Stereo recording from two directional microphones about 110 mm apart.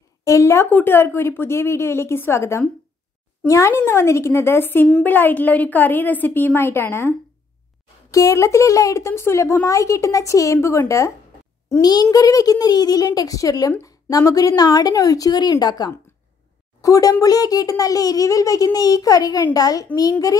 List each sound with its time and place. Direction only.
0.2 s a woman's voice: 30° left (ahead or behind)
0.7 s a woman's voice: 15° left (ahead or behind)
11.8 s a child's voice: 40° left (ahead or behind)